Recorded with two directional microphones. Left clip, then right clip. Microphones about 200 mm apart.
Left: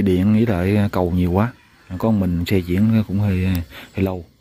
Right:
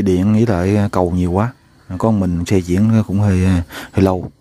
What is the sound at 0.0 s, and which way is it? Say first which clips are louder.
Speech: right 3 dB; 15° right (ahead or behind).